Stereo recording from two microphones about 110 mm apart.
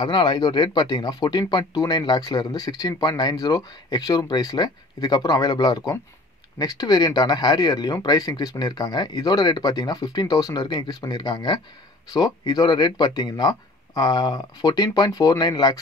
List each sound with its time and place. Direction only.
0.0 s speech: 45° left (ahead or behind)